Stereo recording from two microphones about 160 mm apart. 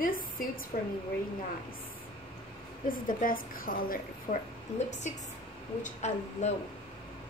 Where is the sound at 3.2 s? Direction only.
60° left (ahead or behind).